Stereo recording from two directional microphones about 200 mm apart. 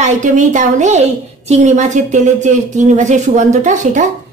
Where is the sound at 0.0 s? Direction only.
40° right (ahead or behind).